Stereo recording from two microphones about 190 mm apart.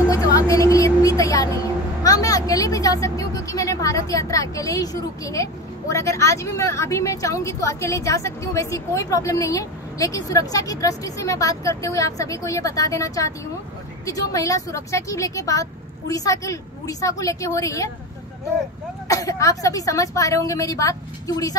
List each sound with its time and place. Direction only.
0.1 s a sound: 15° left (ahead or behind)
2.0 s speech: 20° left (ahead or behind)
19.0 s speech: 15° left (ahead or behind)